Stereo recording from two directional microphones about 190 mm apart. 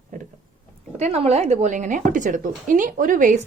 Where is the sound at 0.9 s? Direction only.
35° right (ahead or behind).